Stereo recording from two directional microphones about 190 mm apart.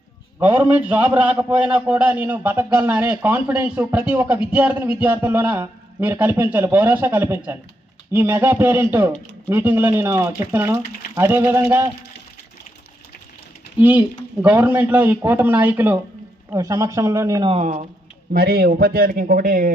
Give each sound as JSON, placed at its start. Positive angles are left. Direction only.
{"t": 0.5, "sound": "a man's voice", "side_deg": -10}
{"t": 13.7, "sound": "a man's voice", "side_deg": -10}
{"t": 17.5, "sound": "speech", "side_deg": -35}
{"t": 18.3, "sound": "a man's voice", "side_deg": -55}